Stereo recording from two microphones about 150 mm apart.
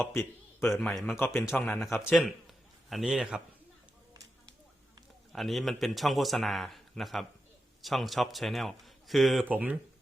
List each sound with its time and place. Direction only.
0.0 s a man's voice: 15° left (ahead or behind)
0.7 s a man's voice: centre (ahead or behind)
2.0 s a man's voice: 5° right (ahead or behind)
5.3 s a man's voice: centre (ahead or behind)